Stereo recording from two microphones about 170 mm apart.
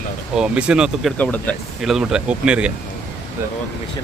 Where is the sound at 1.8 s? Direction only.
Centre (ahead or behind).